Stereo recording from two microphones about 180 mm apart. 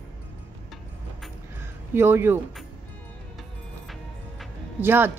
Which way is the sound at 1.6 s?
15° right (ahead or behind).